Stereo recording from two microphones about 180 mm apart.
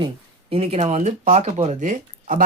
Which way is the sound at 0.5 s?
35° right (ahead or behind).